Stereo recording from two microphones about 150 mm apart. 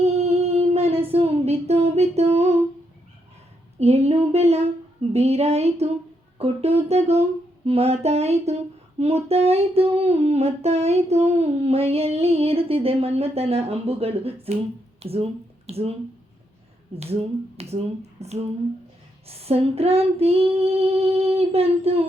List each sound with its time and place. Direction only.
0.0 s a sound: 45° right (ahead or behind)
3.8 s humming: 45° right (ahead or behind)
15.0 s speech: 40° right (ahead or behind)
16.9 s humming: 40° right (ahead or behind)
18.2 s a sound: 45° right (ahead or behind)
19.3 s humming: 40° right (ahead or behind)